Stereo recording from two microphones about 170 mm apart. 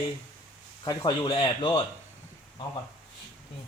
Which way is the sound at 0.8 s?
30° left (ahead or behind).